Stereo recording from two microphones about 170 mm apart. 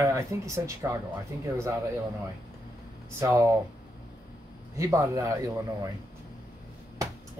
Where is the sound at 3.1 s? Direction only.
15° right (ahead or behind).